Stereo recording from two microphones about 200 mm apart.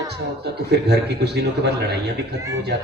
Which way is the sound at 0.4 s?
55° right (ahead or behind).